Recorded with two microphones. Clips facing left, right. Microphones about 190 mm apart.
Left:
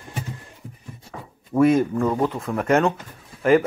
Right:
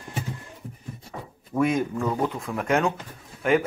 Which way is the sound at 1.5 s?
15° left (ahead or behind).